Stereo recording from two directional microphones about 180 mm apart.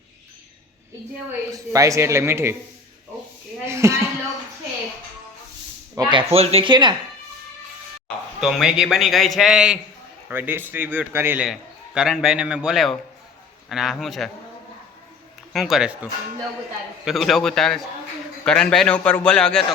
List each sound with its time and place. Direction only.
1.5 s a man's voice: 20° right (ahead or behind)
3.7 s speech: 15° right (ahead or behind)
6.0 s speech: 25° right (ahead or behind)
8.4 s a man's voice: centre (ahead or behind)
15.5 s a man's voice: centre (ahead or behind)
17.1 s a man's voice: centre (ahead or behind)